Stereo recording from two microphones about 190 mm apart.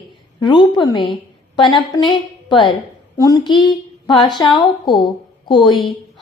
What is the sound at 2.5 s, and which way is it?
A woman's voice, 25° left (ahead or behind).